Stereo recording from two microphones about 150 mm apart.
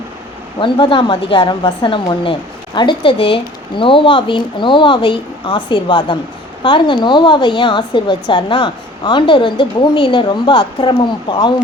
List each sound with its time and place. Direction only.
0.6 s a woman's voice: 35° left (ahead or behind)